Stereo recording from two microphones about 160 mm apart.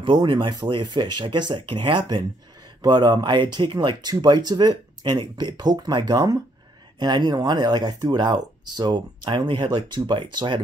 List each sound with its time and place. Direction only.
0.0 s speech: 30° right (ahead or behind)